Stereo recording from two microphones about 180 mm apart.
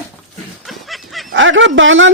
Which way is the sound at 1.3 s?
90° right.